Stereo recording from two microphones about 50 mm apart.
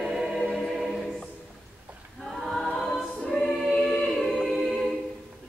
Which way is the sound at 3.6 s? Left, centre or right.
Centre.